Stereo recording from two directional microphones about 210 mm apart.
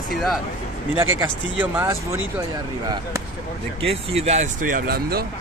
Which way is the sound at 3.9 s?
30° right (ahead or behind).